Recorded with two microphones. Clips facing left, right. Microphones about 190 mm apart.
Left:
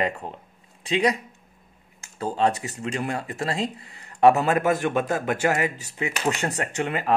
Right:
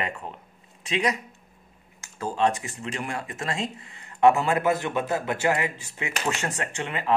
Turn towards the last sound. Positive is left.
turn(degrees=40)  # may be behind; listen again after turning